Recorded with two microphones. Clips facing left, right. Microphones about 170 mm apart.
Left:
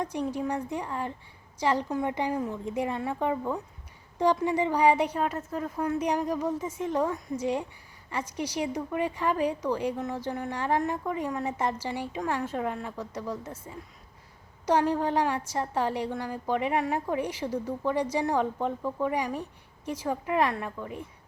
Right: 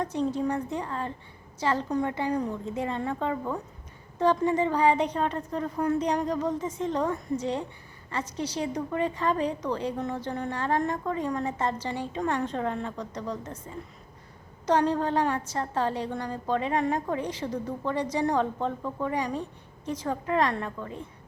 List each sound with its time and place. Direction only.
0.0 s a woman's voice: 10° left (ahead or behind)
2.3 s a woman's voice: 5° left (ahead or behind)